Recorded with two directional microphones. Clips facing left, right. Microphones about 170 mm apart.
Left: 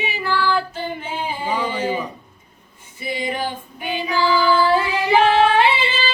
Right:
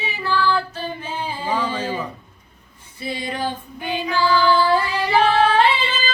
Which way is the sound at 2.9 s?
15° left (ahead or behind).